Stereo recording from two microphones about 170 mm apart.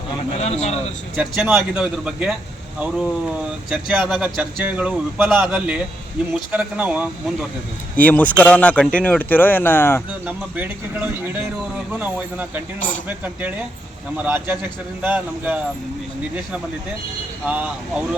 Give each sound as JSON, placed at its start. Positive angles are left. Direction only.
{"t": 0.3, "sound": "speech", "side_deg": 40}
{"t": 1.1, "sound": "speech", "side_deg": -5}
{"t": 3.7, "sound": "speech", "side_deg": -5}
{"t": 7.9, "sound": "speech", "side_deg": 10}
{"t": 10.1, "sound": "speech", "side_deg": -10}
{"t": 17.4, "sound": "speech", "side_deg": -10}